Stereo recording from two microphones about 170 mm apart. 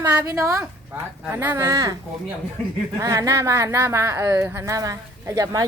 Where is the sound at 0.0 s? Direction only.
15° right (ahead or behind).